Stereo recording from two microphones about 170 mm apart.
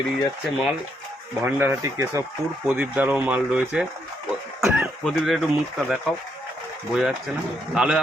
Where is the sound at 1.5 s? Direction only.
10° right (ahead or behind).